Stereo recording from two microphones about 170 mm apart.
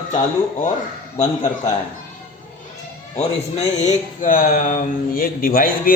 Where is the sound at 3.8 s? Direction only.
50° left (ahead or behind).